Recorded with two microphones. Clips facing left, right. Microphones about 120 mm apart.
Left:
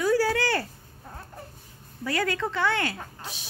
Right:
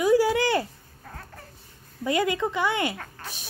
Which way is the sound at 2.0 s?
20° right (ahead or behind).